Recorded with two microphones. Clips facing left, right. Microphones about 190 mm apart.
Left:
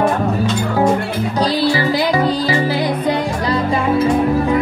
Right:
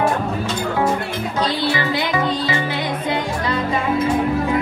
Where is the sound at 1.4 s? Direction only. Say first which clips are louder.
Left 5 dB; 35° left (ahead or behind).